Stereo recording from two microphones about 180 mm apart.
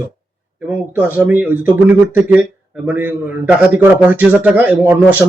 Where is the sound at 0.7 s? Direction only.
10° right (ahead or behind).